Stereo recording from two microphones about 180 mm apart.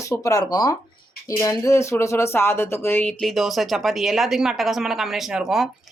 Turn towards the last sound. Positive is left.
turn(degrees=0)  # may be behind; listen again after turning